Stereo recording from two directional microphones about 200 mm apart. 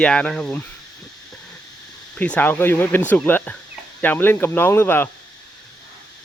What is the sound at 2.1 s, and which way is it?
Speech, 5° left (ahead or behind).